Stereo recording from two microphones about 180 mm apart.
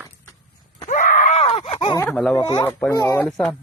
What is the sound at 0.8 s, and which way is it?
Groan, 45° left (ahead or behind).